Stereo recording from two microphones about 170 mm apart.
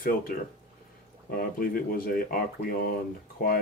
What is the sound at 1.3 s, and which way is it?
Speech, 60° left (ahead or behind).